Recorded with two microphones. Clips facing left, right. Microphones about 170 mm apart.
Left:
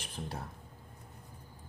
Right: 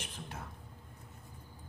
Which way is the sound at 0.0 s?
35° left (ahead or behind).